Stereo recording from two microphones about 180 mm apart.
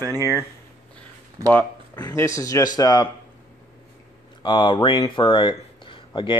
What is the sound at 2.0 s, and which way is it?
A man's voice, 20° left (ahead or behind).